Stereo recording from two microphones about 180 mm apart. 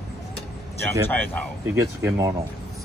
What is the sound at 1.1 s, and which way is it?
Speech, 5° left (ahead or behind).